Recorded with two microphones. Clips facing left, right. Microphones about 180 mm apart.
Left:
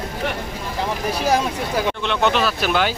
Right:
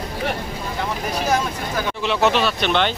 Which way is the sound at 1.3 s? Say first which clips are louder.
Left 3 dB; 30° left (ahead or behind).